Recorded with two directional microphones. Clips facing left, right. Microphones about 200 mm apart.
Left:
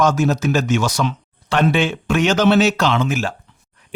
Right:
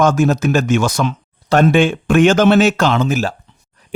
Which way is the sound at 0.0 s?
50° right (ahead or behind).